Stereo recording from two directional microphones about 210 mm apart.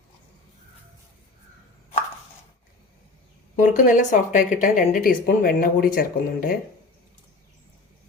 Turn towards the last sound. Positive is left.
turn(degrees=45)  # may be behind; listen again after turning